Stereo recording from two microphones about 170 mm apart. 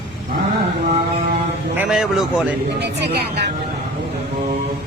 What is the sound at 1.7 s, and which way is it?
Speech, 5° right (ahead or behind).